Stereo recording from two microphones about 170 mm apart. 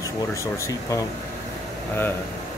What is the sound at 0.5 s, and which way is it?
Speech, 15° left (ahead or behind).